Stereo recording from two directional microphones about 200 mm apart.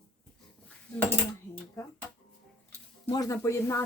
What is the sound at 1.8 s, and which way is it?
Speech, 15° left (ahead or behind).